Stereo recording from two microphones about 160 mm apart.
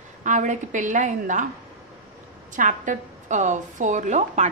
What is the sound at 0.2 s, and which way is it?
A woman's voice, 50° right (ahead or behind).